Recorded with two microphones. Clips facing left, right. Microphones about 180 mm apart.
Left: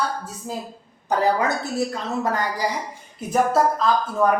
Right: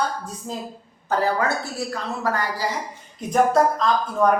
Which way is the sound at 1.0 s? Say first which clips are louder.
Left 1 dB; 15° left (ahead or behind).